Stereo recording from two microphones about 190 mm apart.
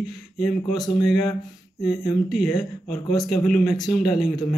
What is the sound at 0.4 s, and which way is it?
Speech, centre (ahead or behind).